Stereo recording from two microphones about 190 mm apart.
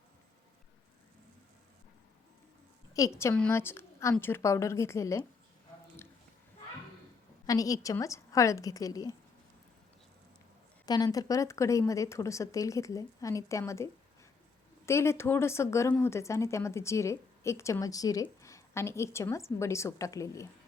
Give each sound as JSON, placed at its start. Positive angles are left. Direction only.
{"t": 2.9, "sound": "speech", "side_deg": 15}
{"t": 7.4, "sound": "speech", "side_deg": 20}
{"t": 10.8, "sound": "speech", "side_deg": 20}
{"t": 14.8, "sound": "speech", "side_deg": 15}